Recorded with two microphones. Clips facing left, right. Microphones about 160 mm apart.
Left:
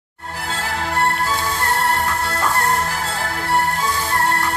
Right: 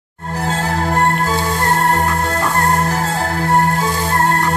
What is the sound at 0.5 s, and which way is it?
Music, 45° right (ahead or behind).